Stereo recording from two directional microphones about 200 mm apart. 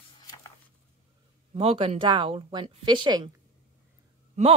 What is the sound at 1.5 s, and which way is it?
Speech, 30° right (ahead or behind).